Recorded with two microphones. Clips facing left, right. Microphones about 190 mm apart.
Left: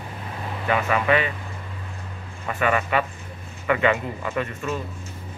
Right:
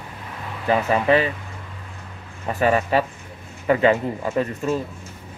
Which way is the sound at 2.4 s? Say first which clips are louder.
Right 3 dB; 35° right (ahead or behind).